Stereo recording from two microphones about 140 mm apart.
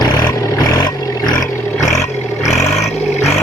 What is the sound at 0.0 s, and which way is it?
Roar, 30° left (ahead or behind).